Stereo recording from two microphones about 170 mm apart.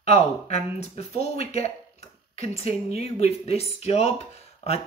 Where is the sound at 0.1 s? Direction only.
40° left (ahead or behind).